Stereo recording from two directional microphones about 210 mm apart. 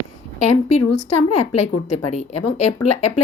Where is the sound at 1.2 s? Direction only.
30° left (ahead or behind).